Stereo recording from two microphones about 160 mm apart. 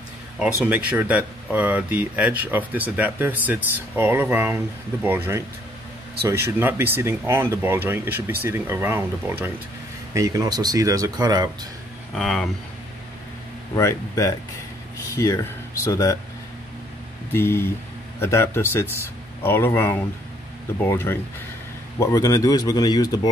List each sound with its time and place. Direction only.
0.4 s speech: 10° right (ahead or behind); by 11.4 s 25° right (ahead or behind)
12.2 s speech: 5° left (ahead or behind)
13.7 s speech: 20° left (ahead or behind)
17.3 s speech: 15° left (ahead or behind)